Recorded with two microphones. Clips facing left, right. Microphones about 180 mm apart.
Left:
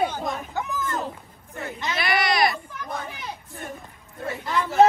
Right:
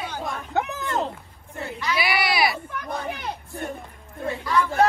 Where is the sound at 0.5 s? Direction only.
65° right (ahead or behind).